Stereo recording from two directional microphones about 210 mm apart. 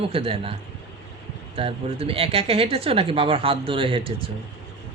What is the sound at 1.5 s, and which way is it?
Speech, 25° right (ahead or behind).